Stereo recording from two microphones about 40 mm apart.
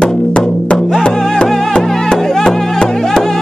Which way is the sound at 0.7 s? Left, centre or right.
Centre.